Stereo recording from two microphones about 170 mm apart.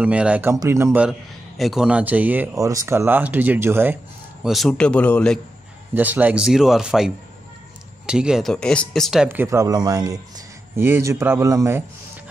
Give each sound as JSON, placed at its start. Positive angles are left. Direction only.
{"t": 0.0, "sound": "speech", "side_deg": -10}
{"t": 1.6, "sound": "speech", "side_deg": -5}
{"t": 4.5, "sound": "speech", "side_deg": 0}
{"t": 5.9, "sound": "speech", "side_deg": -10}
{"t": 8.1, "sound": "speech", "side_deg": -5}